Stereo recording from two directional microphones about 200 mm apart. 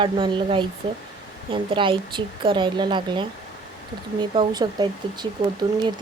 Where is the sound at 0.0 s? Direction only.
25° right (ahead or behind).